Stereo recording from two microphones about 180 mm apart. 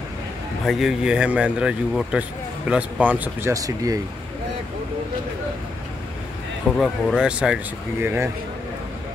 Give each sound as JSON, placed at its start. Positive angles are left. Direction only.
{"t": 0.7, "sound": "a man's voice", "side_deg": 0}
{"t": 6.8, "sound": "a man's voice", "side_deg": 0}